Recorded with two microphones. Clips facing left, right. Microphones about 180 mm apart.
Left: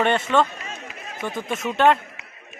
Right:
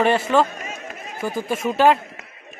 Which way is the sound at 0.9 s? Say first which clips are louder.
Right 4 dB; 45° right (ahead or behind).